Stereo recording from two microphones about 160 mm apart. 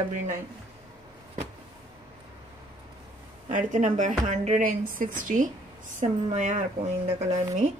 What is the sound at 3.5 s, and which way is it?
Speech, 50° right (ahead or behind).